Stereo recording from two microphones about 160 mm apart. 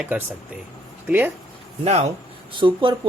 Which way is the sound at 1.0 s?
10° right (ahead or behind).